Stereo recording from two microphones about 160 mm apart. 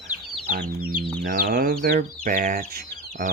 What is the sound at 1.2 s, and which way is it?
Speech, 65° right (ahead or behind).